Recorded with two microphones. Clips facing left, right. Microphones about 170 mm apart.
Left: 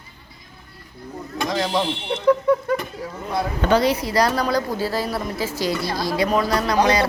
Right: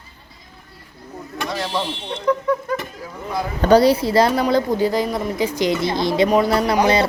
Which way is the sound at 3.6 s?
35° right (ahead or behind).